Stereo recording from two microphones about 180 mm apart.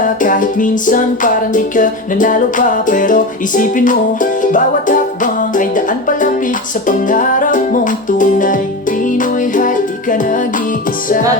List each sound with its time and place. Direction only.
0.0 s music: 45° left (ahead or behind)